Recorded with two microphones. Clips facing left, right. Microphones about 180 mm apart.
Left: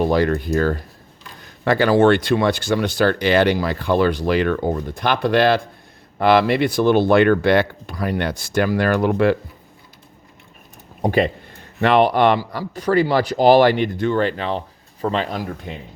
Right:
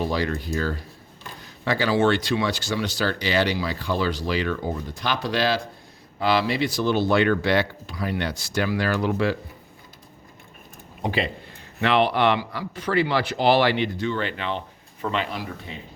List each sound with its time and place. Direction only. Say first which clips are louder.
0.0 s speech: left 8 dB; 55° left (ahead or behind)
11.0 s speech: left 8 dB; 50° left (ahead or behind)